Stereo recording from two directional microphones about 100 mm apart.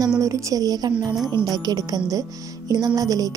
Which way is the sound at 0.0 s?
35° right (ahead or behind).